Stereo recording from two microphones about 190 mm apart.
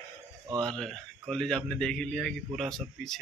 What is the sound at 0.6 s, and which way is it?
Speech, 5° left (ahead or behind).